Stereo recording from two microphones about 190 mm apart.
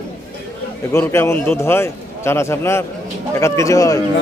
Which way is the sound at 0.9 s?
15° left (ahead or behind).